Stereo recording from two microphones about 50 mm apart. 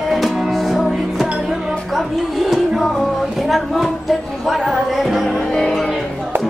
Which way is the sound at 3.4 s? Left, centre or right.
Centre.